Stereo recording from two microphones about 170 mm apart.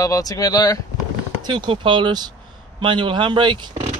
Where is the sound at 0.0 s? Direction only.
20° left (ahead or behind).